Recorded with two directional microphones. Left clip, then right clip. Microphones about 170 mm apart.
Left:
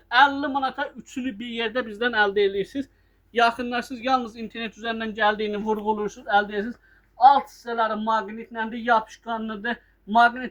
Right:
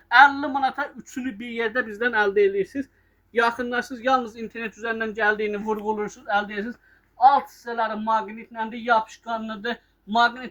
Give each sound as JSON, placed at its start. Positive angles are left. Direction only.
{"t": 0.1, "sound": "a man's voice", "side_deg": -25}
{"t": 5.8, "sound": "a woman's voice", "side_deg": -30}
{"t": 8.2, "sound": "speech", "side_deg": -20}